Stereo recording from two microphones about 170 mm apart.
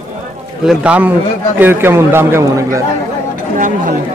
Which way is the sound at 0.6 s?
5° right (ahead or behind).